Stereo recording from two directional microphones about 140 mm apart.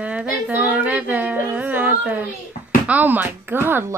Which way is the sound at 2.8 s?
10° right (ahead or behind).